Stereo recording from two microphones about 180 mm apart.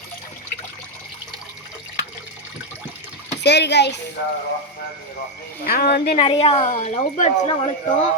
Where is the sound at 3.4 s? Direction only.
70° left (ahead or behind).